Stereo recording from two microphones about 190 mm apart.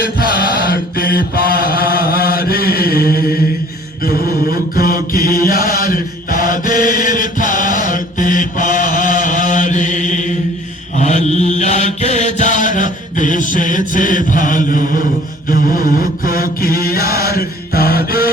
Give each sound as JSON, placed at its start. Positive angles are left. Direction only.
{"t": 0.0, "sound": "mantra", "side_deg": 50}
{"t": 5.4, "sound": "chant", "side_deg": 50}
{"t": 10.9, "sound": "mantra", "side_deg": 40}